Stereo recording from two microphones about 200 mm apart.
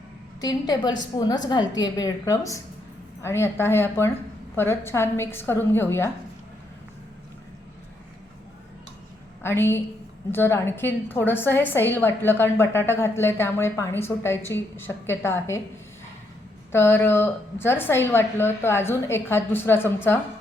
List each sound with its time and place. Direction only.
0.4 s a woman's voice: 20° left (ahead or behind)
9.4 s a woman's voice: 10° left (ahead or behind)
16.7 s a woman's voice: 10° left (ahead or behind)